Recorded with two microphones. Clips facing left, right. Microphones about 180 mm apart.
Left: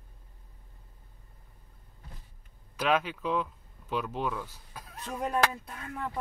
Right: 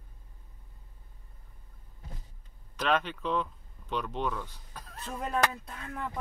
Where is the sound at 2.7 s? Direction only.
10° left (ahead or behind).